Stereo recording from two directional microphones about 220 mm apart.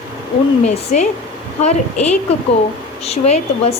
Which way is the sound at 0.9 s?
35° left (ahead or behind).